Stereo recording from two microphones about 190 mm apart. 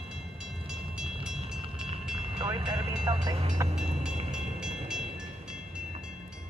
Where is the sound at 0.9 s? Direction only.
5° right (ahead or behind).